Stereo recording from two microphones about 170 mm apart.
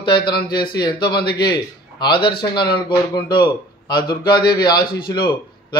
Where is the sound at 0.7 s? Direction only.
25° left (ahead or behind).